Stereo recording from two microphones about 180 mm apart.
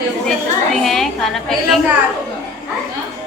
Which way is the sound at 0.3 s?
Centre (ahead or behind).